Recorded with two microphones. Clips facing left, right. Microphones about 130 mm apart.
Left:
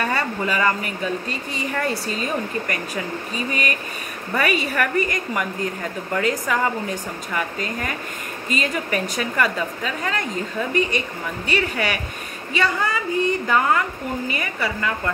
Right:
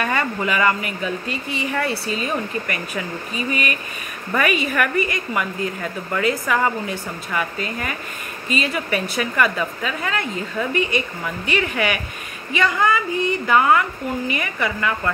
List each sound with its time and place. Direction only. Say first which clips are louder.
0.0 s a woman's voice: right 1 dB; 35° left (ahead or behind)